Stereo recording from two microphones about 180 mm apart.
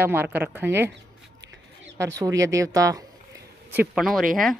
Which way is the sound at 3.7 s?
5° right (ahead or behind).